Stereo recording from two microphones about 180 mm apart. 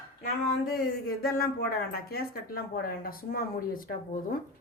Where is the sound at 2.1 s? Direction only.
55° left (ahead or behind).